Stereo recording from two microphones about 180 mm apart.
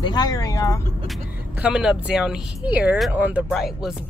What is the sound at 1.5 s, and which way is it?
Speech, 5° right (ahead or behind).